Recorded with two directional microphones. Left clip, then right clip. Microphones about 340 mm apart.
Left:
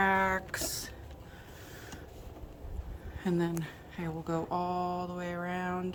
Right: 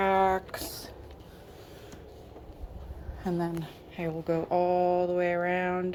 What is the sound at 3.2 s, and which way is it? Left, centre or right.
Speech, centre.